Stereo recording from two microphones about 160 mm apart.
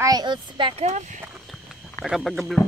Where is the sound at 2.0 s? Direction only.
Centre (ahead or behind).